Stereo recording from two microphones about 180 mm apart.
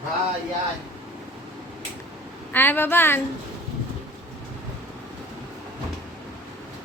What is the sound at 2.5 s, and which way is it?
Speech, 10° left (ahead or behind).